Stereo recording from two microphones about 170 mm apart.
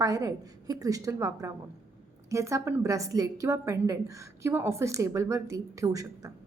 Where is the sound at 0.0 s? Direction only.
20° right (ahead or behind).